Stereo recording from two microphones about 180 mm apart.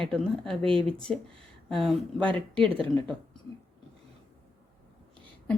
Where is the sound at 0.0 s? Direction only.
5° left (ahead or behind).